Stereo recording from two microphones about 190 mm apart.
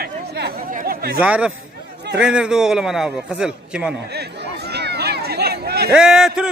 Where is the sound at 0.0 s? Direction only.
60° right (ahead or behind).